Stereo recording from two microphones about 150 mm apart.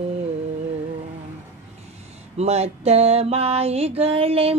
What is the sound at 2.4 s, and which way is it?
Music, 45° right (ahead or behind).